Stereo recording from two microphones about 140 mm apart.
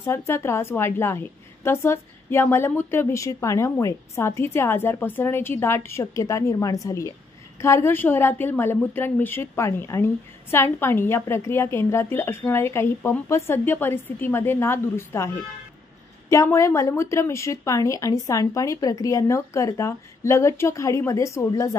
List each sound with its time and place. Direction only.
0.0 s a woman's voice: 20° left (ahead or behind)